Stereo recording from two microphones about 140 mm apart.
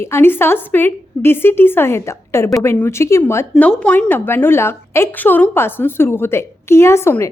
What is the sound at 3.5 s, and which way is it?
A woman's voice, 5° left (ahead or behind).